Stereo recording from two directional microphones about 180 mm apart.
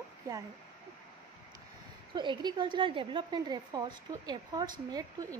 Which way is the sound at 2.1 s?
25° right (ahead or behind).